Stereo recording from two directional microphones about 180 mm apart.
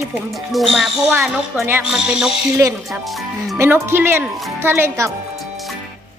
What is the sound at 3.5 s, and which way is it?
Speech, 15° right (ahead or behind).